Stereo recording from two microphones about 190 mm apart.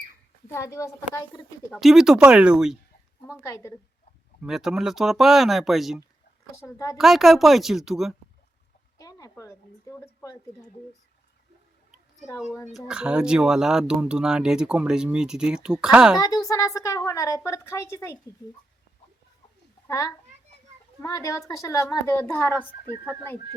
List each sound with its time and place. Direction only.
0.4 s a woman's voice: 15° left (ahead or behind)
1.7 s speech: centre (ahead or behind)
3.4 s a woman's voice: 15° left (ahead or behind)
4.4 s speech: centre (ahead or behind)
6.6 s a woman's voice: 15° left (ahead or behind)
6.9 s speech: centre (ahead or behind)
9.0 s a sound: 20° left (ahead or behind)
12.7 s speech: 5° right (ahead or behind)
16.1 s a woman's voice: 20° left (ahead or behind)
19.9 s a woman's voice: 15° left (ahead or behind)